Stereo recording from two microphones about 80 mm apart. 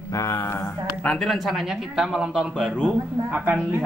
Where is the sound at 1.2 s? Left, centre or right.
Centre.